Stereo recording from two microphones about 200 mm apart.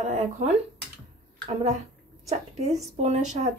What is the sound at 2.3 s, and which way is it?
A woman's voice, 35° right (ahead or behind).